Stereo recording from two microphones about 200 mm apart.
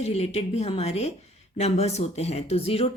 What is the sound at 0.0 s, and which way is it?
Speech, 30° left (ahead or behind).